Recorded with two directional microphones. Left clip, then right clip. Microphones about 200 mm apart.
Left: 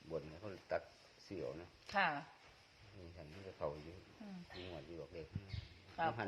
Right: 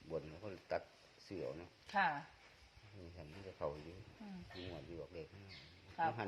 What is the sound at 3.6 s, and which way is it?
Speech, 20° right (ahead or behind).